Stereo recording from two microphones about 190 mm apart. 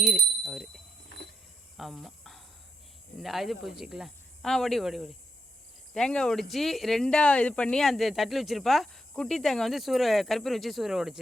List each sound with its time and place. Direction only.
0.0 s bicycle bell: centre (ahead or behind)
1.7 s cricket: centre (ahead or behind)
3.2 s speech: centre (ahead or behind)